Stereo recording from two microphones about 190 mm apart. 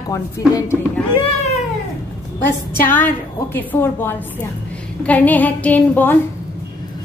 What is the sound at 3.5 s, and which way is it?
A woman's voice, 10° left (ahead or behind).